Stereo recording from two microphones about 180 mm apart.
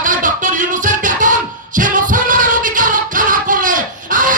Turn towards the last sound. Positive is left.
turn(degrees=-45)  # may be behind; listen again after turning